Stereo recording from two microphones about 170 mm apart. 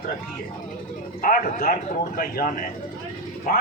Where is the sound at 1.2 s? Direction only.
55° left (ahead or behind).